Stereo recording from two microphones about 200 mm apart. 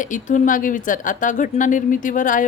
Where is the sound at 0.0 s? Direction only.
40° left (ahead or behind).